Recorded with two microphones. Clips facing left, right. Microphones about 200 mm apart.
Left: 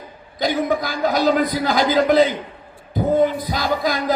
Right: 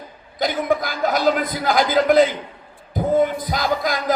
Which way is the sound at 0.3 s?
50° right (ahead or behind).